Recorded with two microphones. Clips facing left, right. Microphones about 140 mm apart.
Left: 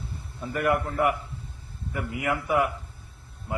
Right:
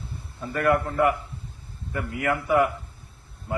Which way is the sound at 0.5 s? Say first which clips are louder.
Right 3 dB; 15° left (ahead or behind).